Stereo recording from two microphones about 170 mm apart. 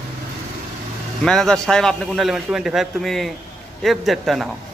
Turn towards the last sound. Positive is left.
turn(degrees=0)  # may be behind; listen again after turning